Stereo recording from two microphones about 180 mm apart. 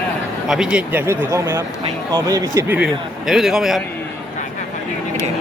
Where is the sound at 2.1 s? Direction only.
20° right (ahead or behind).